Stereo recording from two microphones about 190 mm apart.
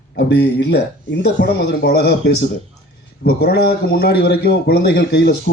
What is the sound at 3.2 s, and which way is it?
Speech, 55° left (ahead or behind).